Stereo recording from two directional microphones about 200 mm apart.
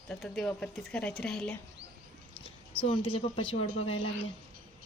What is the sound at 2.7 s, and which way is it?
Speech, 25° left (ahead or behind).